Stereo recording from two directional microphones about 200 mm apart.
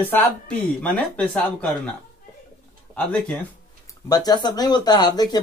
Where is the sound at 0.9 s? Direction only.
5° left (ahead or behind).